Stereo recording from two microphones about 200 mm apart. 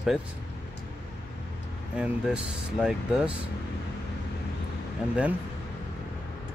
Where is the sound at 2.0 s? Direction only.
5° right (ahead or behind).